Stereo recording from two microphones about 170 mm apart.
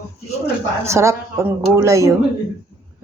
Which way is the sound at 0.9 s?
15° right (ahead or behind).